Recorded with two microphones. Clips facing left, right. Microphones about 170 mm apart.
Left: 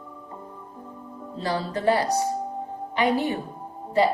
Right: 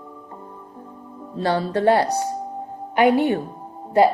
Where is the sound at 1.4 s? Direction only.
65° right (ahead or behind).